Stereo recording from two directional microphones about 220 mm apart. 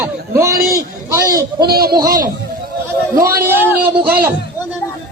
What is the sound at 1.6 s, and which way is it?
Speech, 45° right (ahead or behind).